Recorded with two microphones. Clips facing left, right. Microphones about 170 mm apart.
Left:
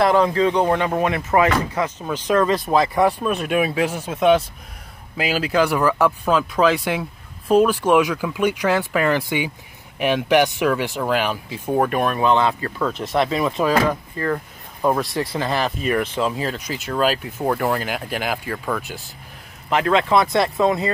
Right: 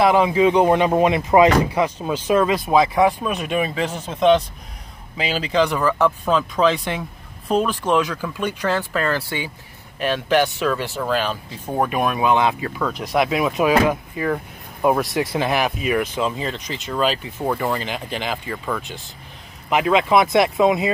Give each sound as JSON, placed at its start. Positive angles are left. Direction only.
{"t": 0.1, "sound": "speech", "side_deg": -10}
{"t": 3.4, "sound": "speech", "side_deg": 5}
{"t": 11.7, "sound": "speech", "side_deg": -5}
{"t": 19.7, "sound": "speech", "side_deg": -10}